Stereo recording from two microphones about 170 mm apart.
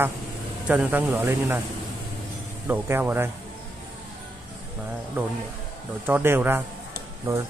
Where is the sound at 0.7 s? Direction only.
10° right (ahead or behind).